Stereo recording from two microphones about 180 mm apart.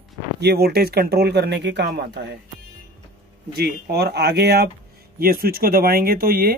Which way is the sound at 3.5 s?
65° right (ahead or behind).